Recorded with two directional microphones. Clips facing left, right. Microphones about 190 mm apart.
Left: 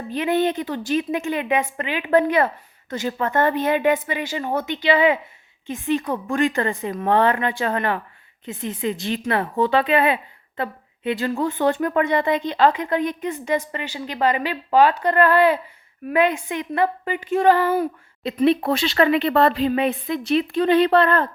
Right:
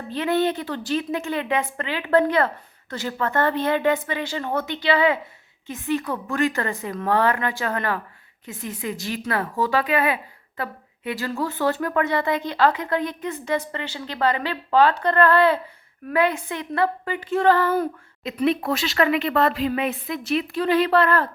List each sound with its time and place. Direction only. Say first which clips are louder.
0.1 s a woman's voice: left 1 dB; 15° left (ahead or behind)
18.2 s speech: left 4 dB; 30° left (ahead or behind)